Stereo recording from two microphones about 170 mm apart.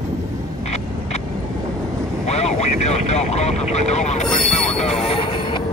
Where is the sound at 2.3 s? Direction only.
40° left (ahead or behind).